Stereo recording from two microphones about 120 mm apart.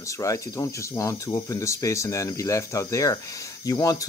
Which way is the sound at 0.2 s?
25° left (ahead or behind).